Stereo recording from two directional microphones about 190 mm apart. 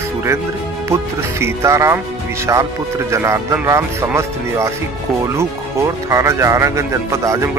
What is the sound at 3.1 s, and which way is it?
Speech, 15° right (ahead or behind).